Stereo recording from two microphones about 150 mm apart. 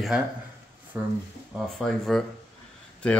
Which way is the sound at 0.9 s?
15° right (ahead or behind).